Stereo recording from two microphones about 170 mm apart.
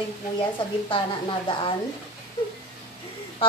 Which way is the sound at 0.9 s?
30° left (ahead or behind).